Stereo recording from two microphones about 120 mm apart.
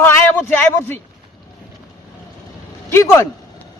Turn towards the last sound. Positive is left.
turn(degrees=25)  # may be behind; listen again after turning